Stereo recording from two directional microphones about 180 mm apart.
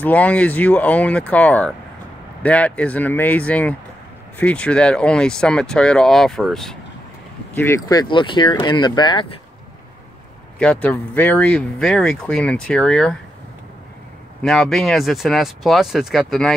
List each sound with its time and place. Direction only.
0.0 s speech: 10° left (ahead or behind)
7.5 s speech: 15° left (ahead or behind)
10.6 s speech: 10° left (ahead or behind)
14.4 s speech: centre (ahead or behind)